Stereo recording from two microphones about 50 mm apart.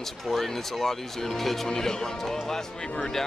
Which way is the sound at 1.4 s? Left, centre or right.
Centre.